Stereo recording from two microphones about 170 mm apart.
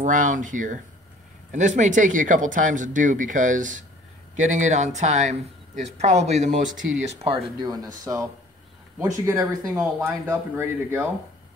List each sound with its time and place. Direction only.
0.0 s speech: 50° right (ahead or behind)
7.6 s speech: 20° right (ahead or behind)